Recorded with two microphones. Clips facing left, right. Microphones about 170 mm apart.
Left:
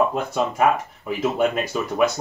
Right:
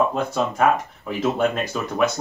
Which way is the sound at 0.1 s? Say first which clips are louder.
Even; 5° left (ahead or behind).